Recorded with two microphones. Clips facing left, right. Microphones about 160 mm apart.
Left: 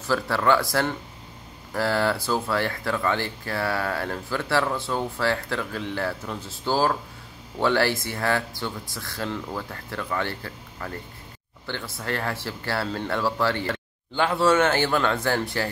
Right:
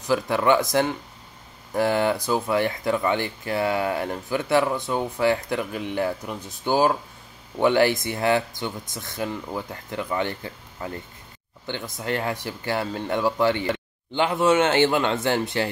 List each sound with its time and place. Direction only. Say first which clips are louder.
0.0 s speech: right 2 dB; 15° right (ahead or behind)